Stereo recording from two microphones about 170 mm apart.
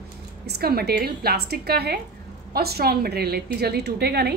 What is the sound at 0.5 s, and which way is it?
A woman's voice, 65° right (ahead or behind).